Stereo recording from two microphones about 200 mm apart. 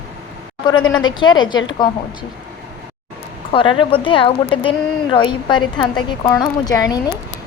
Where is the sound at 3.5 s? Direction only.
25° left (ahead or behind).